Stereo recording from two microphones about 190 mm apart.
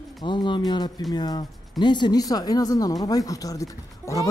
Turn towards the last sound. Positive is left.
turn(degrees=15)  # may be behind; listen again after turning